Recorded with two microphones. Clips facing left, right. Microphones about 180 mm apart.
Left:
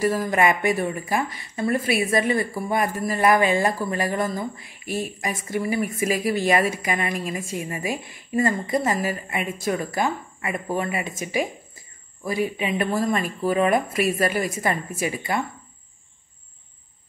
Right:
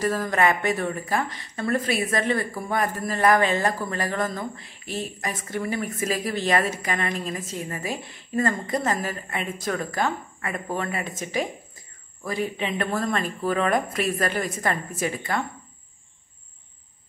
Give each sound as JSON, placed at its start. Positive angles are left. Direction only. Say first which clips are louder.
{"t": 0.0, "sound": "speech", "louder": "left 2 dB", "side_deg": 10}